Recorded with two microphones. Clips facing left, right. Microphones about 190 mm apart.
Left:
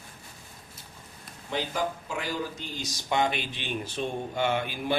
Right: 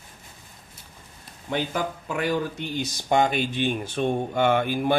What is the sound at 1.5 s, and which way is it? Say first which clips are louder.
Speech: right 3 dB; 60° right (ahead or behind).